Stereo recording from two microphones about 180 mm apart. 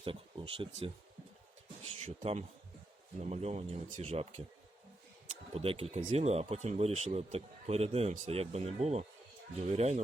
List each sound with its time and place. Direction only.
0.0 s speech: 30° right (ahead or behind)
2.0 s speech: 35° right (ahead or behind)
5.5 s speech: 35° right (ahead or behind)